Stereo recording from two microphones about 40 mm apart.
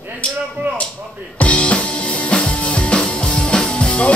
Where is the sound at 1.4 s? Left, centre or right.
Left.